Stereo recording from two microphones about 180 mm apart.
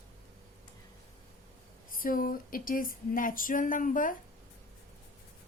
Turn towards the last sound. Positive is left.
turn(degrees=50)  # may be behind; listen again after turning